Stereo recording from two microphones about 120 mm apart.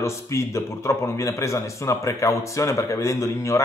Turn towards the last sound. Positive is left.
turn(degrees=25)  # may be behind; listen again after turning